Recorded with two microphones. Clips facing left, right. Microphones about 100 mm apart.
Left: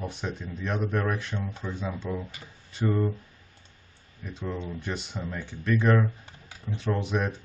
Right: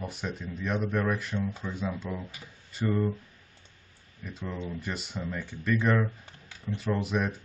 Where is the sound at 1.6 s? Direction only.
15° left (ahead or behind).